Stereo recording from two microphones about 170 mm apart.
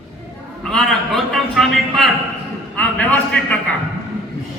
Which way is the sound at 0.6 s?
5° left (ahead or behind).